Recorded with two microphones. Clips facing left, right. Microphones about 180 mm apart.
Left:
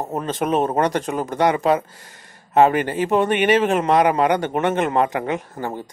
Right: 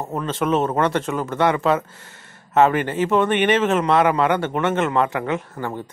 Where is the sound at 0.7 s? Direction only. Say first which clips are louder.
Even; 40° left (ahead or behind).